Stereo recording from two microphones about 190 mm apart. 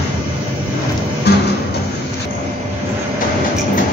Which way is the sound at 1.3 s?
60° left (ahead or behind).